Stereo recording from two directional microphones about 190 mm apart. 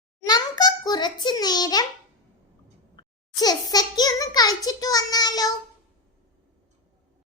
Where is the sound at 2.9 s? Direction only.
20° left (ahead or behind).